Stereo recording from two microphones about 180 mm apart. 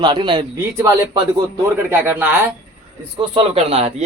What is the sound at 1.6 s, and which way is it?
Speech, 10° right (ahead or behind).